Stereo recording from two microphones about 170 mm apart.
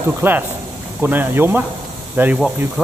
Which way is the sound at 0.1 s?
10° right (ahead or behind).